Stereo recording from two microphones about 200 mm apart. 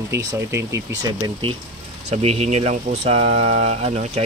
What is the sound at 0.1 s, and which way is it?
A man's voice, 15° right (ahead or behind).